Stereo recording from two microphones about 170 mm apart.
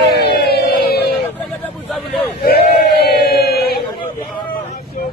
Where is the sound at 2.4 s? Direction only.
70° left (ahead or behind).